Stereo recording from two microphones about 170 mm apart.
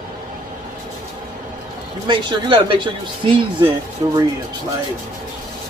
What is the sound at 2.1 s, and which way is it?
Speech, 30° right (ahead or behind).